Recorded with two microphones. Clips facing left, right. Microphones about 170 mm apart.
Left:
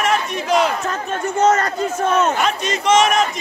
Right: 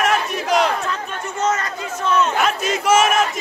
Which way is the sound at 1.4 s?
50° left (ahead or behind).